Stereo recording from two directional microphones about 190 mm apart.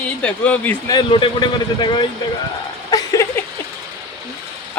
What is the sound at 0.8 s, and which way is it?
Speech, 25° left (ahead or behind).